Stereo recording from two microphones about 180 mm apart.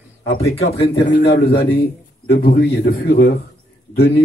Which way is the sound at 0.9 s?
65° left (ahead or behind).